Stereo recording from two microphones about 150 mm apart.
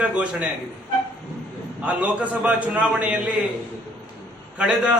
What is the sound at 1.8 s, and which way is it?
A man's voice, 10° right (ahead or behind).